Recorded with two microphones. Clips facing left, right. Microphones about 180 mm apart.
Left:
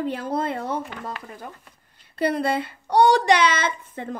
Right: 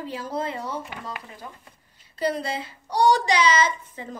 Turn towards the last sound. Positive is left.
turn(degrees=60)  # may be behind; listen again after turning